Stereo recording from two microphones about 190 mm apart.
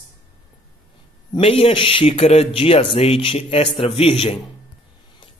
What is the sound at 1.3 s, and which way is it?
Speech, 30° left (ahead or behind).